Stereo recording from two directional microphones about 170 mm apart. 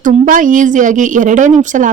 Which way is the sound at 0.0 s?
50° right (ahead or behind).